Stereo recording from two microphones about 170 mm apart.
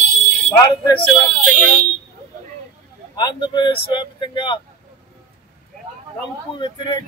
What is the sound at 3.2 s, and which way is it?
Speech, 25° left (ahead or behind).